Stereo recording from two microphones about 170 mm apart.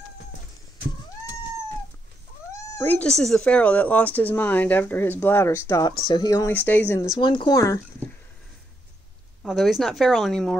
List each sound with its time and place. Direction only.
2.5 s speech: 10° left (ahead or behind)
7.0 s speech: 30° left (ahead or behind)
9.4 s a woman's voice: centre (ahead or behind)